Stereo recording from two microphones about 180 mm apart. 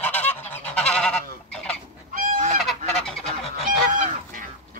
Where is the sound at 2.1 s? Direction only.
45° right (ahead or behind).